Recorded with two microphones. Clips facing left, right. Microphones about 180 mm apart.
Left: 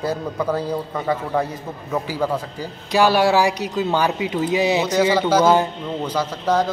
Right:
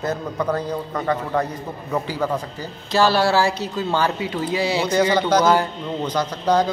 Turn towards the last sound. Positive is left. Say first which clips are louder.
# right 1 dB
turn(degrees=0)  # may be behind; listen again after turning